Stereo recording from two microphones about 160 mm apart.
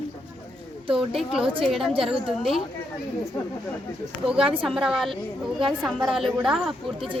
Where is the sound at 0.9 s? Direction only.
5° right (ahead or behind).